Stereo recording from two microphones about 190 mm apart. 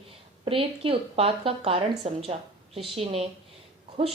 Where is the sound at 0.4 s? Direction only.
30° right (ahead or behind).